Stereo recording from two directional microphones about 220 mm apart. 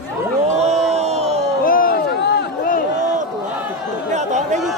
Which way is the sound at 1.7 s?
40° left (ahead or behind).